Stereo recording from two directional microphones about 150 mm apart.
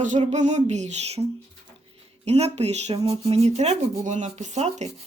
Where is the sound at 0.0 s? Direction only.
50° right (ahead or behind).